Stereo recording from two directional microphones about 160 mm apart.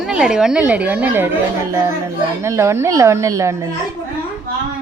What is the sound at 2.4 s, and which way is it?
A woman's voice, 15° right (ahead or behind).